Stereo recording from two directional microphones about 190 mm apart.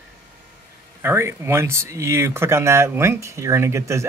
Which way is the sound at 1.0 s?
15° right (ahead or behind).